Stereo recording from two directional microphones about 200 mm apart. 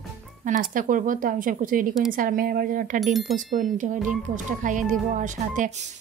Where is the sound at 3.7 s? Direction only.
40° right (ahead or behind).